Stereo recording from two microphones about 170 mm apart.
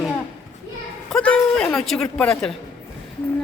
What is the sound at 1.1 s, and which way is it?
A man's voice, 5° left (ahead or behind).